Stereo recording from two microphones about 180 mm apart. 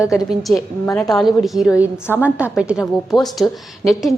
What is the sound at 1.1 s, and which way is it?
A woman's voice, centre (ahead or behind).